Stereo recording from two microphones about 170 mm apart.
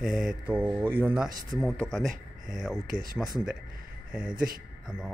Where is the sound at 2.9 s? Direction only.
55° right (ahead or behind).